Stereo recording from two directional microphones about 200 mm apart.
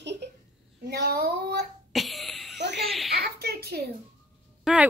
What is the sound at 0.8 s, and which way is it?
Speech, 55° right (ahead or behind).